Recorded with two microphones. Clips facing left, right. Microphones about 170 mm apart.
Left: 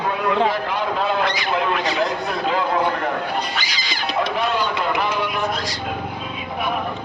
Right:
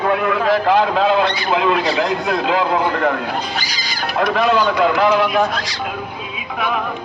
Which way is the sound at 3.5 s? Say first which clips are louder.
Right 2 dB; 40° right (ahead or behind).